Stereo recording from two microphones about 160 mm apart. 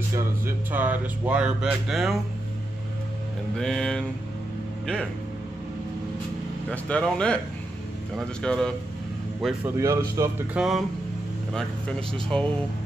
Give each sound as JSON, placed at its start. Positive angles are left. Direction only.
{"t": 0.1, "sound": "speech", "side_deg": -15}
{"t": 3.5, "sound": "speech", "side_deg": 5}
{"t": 6.7, "sound": "speech", "side_deg": 5}
{"t": 9.8, "sound": "speech", "side_deg": -20}
{"t": 10.5, "sound": "speech", "side_deg": -5}
{"t": 12.1, "sound": "speech", "side_deg": 5}